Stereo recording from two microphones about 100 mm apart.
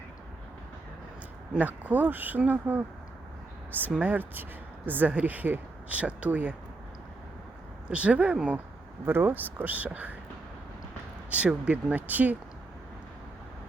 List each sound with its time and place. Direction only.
1.5 s speech: 15° right (ahead or behind)
7.9 s speech: 10° right (ahead or behind)
11.3 s speech: 10° right (ahead or behind)